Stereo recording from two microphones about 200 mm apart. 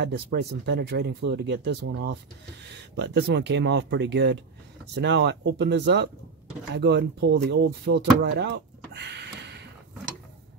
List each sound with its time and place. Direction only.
0.0 s speech: 55° right (ahead or behind)